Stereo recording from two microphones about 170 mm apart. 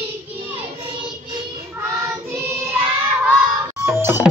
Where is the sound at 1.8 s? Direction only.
15° right (ahead or behind).